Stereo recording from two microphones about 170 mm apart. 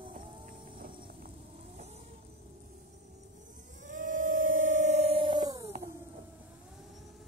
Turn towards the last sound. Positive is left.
turn(degrees=-25)  # may be behind; listen again after turning